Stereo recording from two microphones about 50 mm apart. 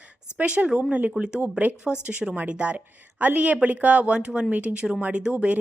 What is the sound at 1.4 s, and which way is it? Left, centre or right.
A woman's voice, right.